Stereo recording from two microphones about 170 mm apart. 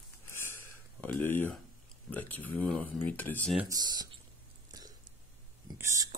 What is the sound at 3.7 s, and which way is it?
Speech, 25° right (ahead or behind).